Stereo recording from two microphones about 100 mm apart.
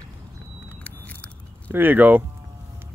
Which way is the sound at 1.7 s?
20° right (ahead or behind).